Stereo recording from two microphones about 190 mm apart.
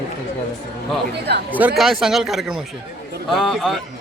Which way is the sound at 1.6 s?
5° right (ahead or behind).